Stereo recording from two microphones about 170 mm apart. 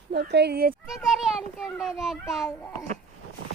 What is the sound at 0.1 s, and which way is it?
Speech, 75° right (ahead or behind).